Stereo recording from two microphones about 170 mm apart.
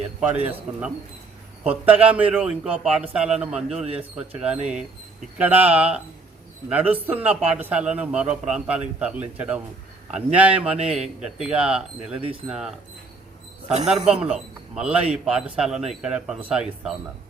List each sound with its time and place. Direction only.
0.2 s a man's voice: 10° right (ahead or behind)
13.7 s a man's voice: 40° right (ahead or behind)
14.1 s a man's voice: 5° right (ahead or behind)